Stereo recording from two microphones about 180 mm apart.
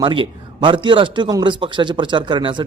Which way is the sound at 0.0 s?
25° right (ahead or behind).